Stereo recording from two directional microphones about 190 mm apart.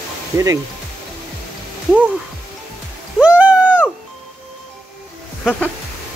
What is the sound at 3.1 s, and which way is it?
Cat, 5° right (ahead or behind).